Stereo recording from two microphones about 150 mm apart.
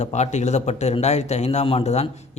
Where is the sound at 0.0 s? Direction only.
50° left (ahead or behind).